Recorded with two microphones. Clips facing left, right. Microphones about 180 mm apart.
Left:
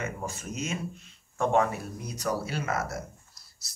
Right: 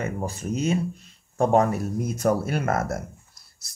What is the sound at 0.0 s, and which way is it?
Speech, 35° right (ahead or behind).